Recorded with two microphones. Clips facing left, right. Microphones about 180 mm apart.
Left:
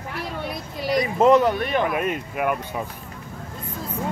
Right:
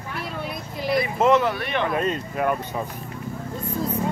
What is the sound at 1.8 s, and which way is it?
Speech, 15° left (ahead or behind).